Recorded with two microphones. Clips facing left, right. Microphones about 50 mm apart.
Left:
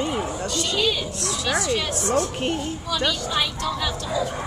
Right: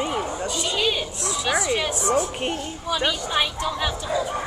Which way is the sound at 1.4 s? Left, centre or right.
Centre.